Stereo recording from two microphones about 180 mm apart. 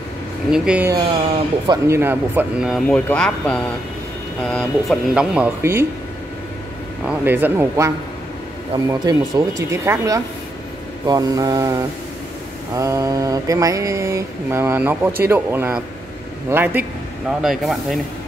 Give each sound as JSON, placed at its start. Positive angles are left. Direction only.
{"t": 0.5, "sound": "mantra", "side_deg": -5}
{"t": 3.1, "sound": "speech", "side_deg": 5}
{"t": 7.1, "sound": "mantra", "side_deg": -10}
{"t": 17.4, "sound": "speech", "side_deg": 0}